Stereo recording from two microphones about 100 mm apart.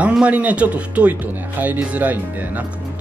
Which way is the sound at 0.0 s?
10° right (ahead or behind).